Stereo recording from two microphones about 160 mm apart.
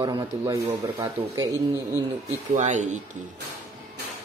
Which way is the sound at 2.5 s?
50° right (ahead or behind).